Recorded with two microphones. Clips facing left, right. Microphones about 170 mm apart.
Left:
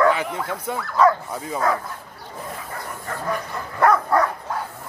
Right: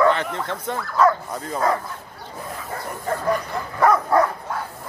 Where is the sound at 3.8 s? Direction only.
5° right (ahead or behind).